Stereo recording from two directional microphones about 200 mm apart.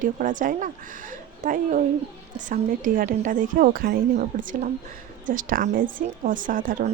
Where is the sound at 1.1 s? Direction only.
40° right (ahead or behind).